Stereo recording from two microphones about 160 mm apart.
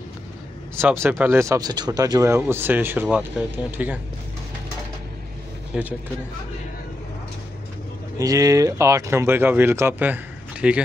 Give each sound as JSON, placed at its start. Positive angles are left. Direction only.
{"t": 0.7, "sound": "speech", "side_deg": -15}
{"t": 5.7, "sound": "speech", "side_deg": 0}
{"t": 8.2, "sound": "speech", "side_deg": -20}